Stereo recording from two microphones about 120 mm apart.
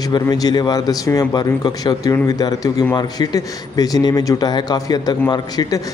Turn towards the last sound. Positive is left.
turn(degrees=35)  # may be behind; listen again after turning